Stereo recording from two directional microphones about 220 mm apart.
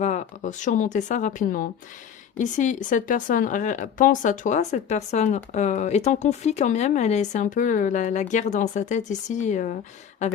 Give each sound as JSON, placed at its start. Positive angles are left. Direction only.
{"t": 0.0, "sound": "speech", "side_deg": 35}